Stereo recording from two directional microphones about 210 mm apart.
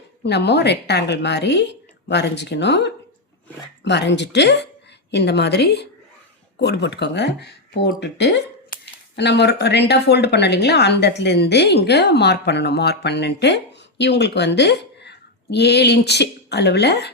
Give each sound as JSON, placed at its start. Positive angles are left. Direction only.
{"t": 0.2, "sound": "speech", "side_deg": 50}